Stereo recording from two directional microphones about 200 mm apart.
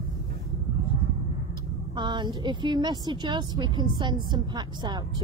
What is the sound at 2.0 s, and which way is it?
A woman's voice, 20° right (ahead or behind).